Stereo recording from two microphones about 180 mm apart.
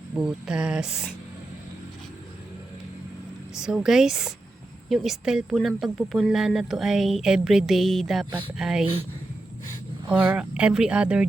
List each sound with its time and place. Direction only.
0.2 s speech: 5° right (ahead or behind)
3.6 s speech: centre (ahead or behind)
8.3 s speech: 30° right (ahead or behind)
8.5 s speech: 5° right (ahead or behind)
10.1 s speech: 10° right (ahead or behind)